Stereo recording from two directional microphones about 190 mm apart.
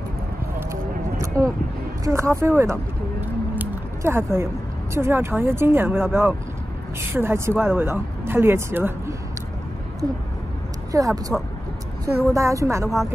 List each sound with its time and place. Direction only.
0.6 s a sound: 15° right (ahead or behind)
4.9 s speech: 15° right (ahead or behind)
10.9 s speech: 20° right (ahead or behind)